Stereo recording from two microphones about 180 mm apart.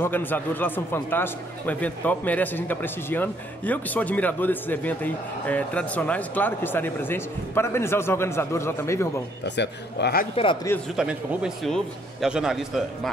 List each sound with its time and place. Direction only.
0.0 s speech: 10° left (ahead or behind)
9.4 s a man's voice: 70° left (ahead or behind)
10.3 s a man's voice: 25° left (ahead or behind)
11.0 s a man's voice: 5° right (ahead or behind)